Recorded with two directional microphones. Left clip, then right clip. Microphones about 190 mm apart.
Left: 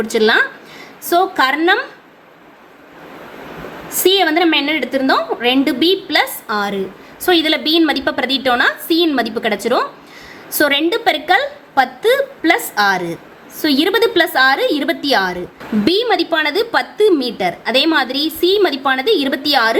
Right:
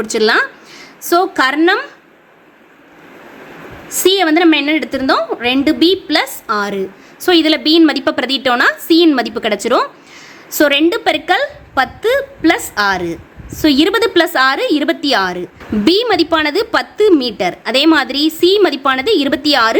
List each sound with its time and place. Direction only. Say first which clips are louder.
0.0 s a woman's voice: even; 35° right (ahead or behind)
3.8 s a woman's voice: right 1 dB; 35° right (ahead or behind)